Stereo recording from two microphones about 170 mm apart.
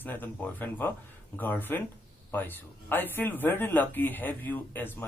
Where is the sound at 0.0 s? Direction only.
10° left (ahead or behind).